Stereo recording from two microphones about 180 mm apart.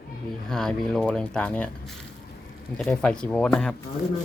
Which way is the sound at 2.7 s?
5° left (ahead or behind).